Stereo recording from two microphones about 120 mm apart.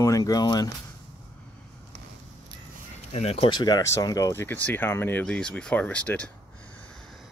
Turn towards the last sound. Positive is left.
turn(degrees=10)  # may be behind; listen again after turning